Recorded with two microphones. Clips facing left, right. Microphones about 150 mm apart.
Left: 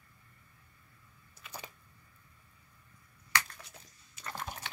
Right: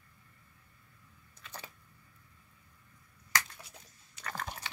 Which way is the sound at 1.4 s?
10° left (ahead or behind).